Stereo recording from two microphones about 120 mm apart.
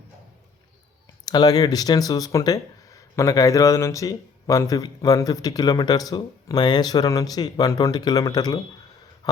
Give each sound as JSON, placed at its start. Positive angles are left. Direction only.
{"t": 1.2, "sound": "speech", "side_deg": 35}